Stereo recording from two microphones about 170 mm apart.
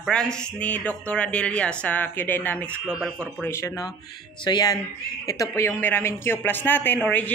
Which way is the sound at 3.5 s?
15° left (ahead or behind).